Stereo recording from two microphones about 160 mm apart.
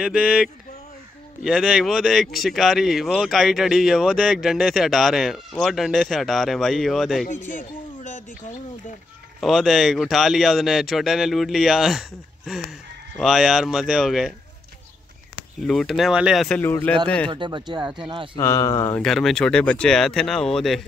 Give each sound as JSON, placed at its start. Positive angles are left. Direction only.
{"t": 0.0, "sound": "speech", "side_deg": -5}
{"t": 1.4, "sound": "speech", "side_deg": 0}
{"t": 7.2, "sound": "speech", "side_deg": 55}
{"t": 9.4, "sound": "speech", "side_deg": 0}
{"t": 15.6, "sound": "speech", "side_deg": 0}
{"t": 17.3, "sound": "speech", "side_deg": -30}
{"t": 18.3, "sound": "speech", "side_deg": 20}
{"t": 19.0, "sound": "speech", "side_deg": 0}